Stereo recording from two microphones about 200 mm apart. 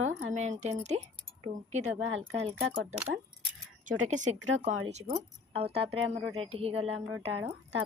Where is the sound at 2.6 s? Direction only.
60° right (ahead or behind).